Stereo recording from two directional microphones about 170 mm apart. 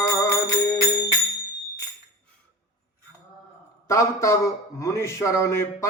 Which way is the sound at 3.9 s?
15° left (ahead or behind).